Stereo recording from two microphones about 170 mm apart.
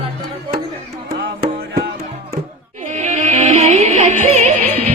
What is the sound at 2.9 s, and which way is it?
Music, 45° right (ahead or behind).